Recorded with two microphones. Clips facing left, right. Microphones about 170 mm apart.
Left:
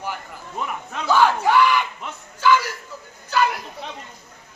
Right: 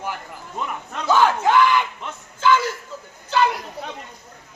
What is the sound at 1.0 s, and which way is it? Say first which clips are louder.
Crowd: even; 20° right (ahead or behind).